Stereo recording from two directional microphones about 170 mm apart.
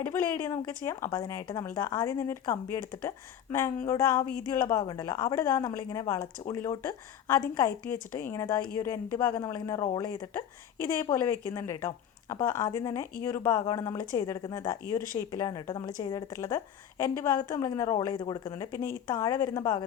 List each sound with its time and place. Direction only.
0.0 s speech: 15° left (ahead or behind)